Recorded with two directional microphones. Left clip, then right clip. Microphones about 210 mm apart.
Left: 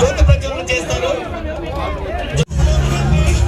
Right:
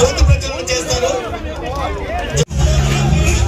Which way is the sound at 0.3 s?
30° right (ahead or behind).